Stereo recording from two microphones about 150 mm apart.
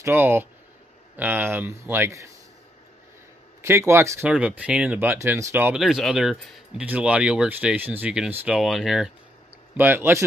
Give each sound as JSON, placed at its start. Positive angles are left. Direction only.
{"t": 0.0, "sound": "speech", "side_deg": -15}
{"t": 3.6, "sound": "speech", "side_deg": -15}
{"t": 4.3, "sound": "speech", "side_deg": -5}
{"t": 5.8, "sound": "speech", "side_deg": 0}